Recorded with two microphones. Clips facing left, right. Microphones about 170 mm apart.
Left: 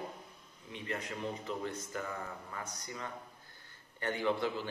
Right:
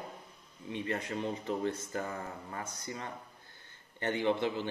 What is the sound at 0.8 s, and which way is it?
A man's voice, 30° right (ahead or behind).